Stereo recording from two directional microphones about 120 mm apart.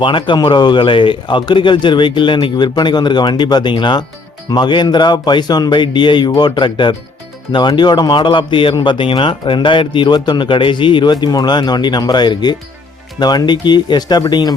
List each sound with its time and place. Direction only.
0.0 s a man's voice: 45° left (ahead or behind)